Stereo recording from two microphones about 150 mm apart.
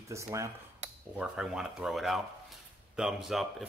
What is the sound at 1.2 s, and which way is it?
Speech, 5° right (ahead or behind).